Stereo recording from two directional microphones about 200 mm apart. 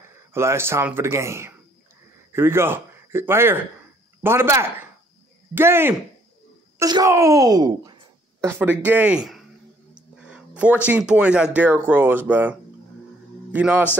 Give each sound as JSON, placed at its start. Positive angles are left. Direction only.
{"t": 0.3, "sound": "a man's voice", "side_deg": -10}